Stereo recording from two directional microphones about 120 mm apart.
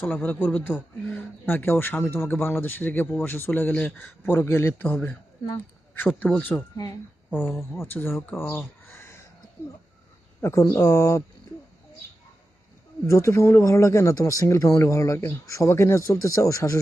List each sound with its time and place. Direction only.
0.0 s a man's voice: 15° left (ahead or behind)
6.1 s a man's voice: 10° left (ahead or behind)
10.4 s speech: 20° left (ahead or behind)
13.1 s speech: 25° left (ahead or behind)